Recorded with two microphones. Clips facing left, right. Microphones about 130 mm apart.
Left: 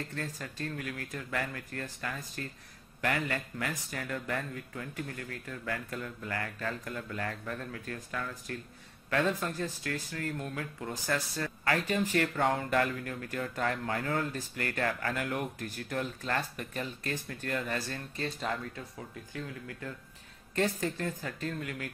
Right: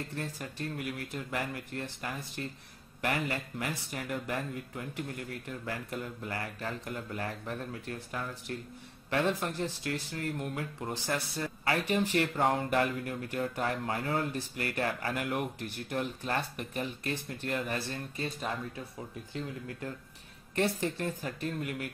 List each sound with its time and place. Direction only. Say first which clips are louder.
0.1 s speech: right 1 dB; 20° right (ahead or behind)
14.3 s speech: right 1 dB; 15° right (ahead or behind)
20.8 s speech: right 1 dB; 15° right (ahead or behind)